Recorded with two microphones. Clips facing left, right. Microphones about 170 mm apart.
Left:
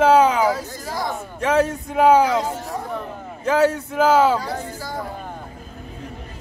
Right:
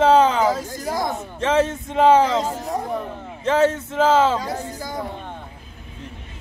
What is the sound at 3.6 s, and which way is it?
Speech, 25° right (ahead or behind).